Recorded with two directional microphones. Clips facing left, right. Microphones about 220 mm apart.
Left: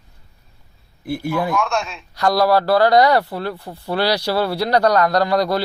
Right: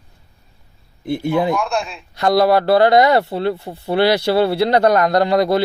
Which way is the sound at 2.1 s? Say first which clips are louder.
Right 2 dB; 25° right (ahead or behind).